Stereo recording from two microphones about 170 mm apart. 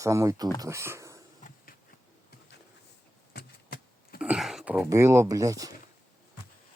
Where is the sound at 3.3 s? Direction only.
65° left (ahead or behind).